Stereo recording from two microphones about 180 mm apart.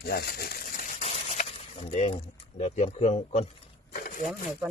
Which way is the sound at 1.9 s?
35° left (ahead or behind).